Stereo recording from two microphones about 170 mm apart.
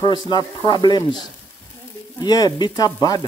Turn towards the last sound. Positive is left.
turn(degrees=25)  # may be behind; listen again after turning